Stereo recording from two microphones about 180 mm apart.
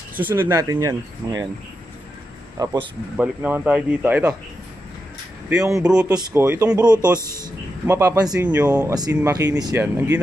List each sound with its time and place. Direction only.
0.2 s speech: 10° right (ahead or behind)
2.5 s a man's voice: 20° right (ahead or behind)
3.2 s speech: 10° right (ahead or behind)
5.5 s speech: 5° right (ahead or behind)
5.9 s speech: 15° right (ahead or behind)
7.2 s speech: 15° left (ahead or behind)
7.8 s speech: 15° right (ahead or behind)